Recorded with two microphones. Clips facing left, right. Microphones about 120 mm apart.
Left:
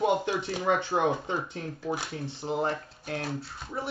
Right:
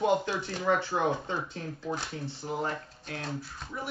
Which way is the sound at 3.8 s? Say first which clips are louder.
Left 4 dB; 30° left (ahead or behind).